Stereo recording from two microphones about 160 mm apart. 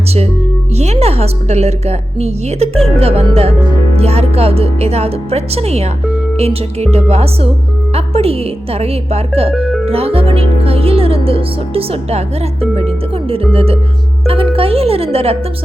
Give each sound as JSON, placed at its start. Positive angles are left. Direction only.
{"t": 0.8, "sound": "speech", "side_deg": -40}